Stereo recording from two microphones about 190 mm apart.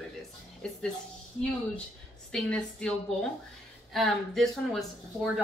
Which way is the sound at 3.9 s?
Centre (ahead or behind).